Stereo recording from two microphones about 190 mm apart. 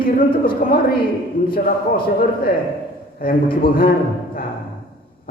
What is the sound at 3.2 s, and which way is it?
Speech, 50° left (ahead or behind).